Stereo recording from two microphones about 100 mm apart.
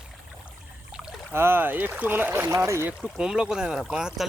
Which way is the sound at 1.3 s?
25° right (ahead or behind).